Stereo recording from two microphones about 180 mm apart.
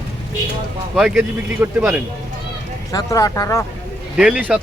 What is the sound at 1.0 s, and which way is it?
Speech, 5° right (ahead or behind).